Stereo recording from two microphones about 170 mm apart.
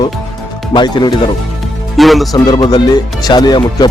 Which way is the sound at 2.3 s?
25° left (ahead or behind).